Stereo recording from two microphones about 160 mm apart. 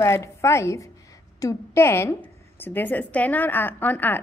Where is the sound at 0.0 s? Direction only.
15° left (ahead or behind).